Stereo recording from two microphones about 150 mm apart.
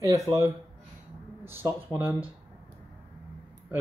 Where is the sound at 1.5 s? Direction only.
15° right (ahead or behind).